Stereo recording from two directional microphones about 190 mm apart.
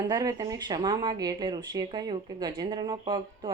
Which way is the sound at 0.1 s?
20° right (ahead or behind).